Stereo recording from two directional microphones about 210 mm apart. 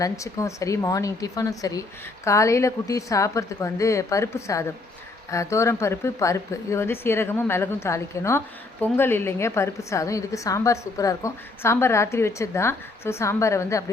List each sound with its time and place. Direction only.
0.0 s a woman's voice: 15° left (ahead or behind)